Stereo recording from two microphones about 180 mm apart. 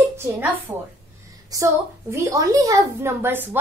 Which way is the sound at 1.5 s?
20° right (ahead or behind).